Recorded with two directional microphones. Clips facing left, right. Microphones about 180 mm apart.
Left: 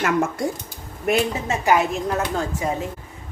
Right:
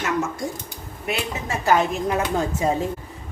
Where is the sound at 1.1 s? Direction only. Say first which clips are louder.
Left 7 dB; 50° left (ahead or behind).